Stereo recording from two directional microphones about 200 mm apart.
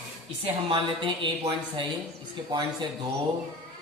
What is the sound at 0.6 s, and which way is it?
Speech, 25° right (ahead or behind).